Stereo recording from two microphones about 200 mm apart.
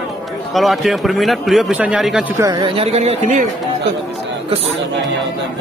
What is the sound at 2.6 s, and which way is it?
Speech, 30° right (ahead or behind).